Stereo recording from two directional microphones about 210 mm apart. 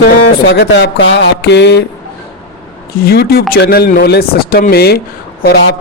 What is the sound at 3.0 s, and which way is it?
A man's voice, 50° left (ahead or behind).